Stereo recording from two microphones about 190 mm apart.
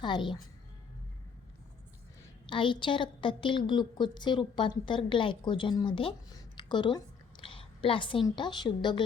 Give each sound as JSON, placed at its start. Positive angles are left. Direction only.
{"t": 0.0, "sound": "a woman's voice", "side_deg": 25}
{"t": 2.5, "sound": "a woman's voice", "side_deg": 25}